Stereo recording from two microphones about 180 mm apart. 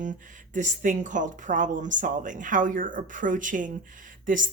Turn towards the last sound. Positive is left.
turn(degrees=-50)  # may be behind; listen again after turning